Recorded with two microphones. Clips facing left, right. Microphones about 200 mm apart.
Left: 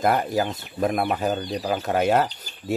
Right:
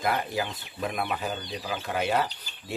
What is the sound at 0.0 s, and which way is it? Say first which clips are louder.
Speech: left 7 dB; 45° left (ahead or behind).